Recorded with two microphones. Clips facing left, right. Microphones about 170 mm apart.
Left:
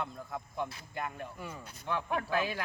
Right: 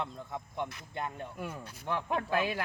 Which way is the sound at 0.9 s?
30° right (ahead or behind).